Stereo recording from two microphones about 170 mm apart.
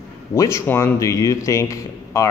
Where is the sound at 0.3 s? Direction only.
15° left (ahead or behind).